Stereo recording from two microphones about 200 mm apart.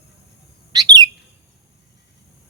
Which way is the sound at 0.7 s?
20° right (ahead or behind).